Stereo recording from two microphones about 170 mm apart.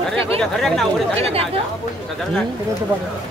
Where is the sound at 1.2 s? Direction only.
35° right (ahead or behind).